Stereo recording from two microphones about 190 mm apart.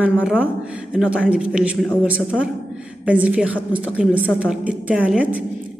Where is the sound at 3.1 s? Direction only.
5° right (ahead or behind).